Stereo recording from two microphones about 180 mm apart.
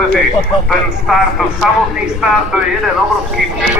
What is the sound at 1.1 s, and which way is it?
Speech, centre (ahead or behind).